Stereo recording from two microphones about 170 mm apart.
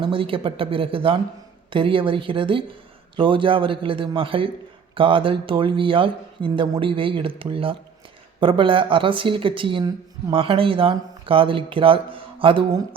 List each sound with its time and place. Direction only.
0.0 s a woman's voice: 30° right (ahead or behind)